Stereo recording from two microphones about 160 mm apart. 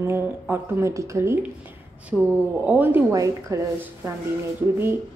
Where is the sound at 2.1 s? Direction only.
5° left (ahead or behind).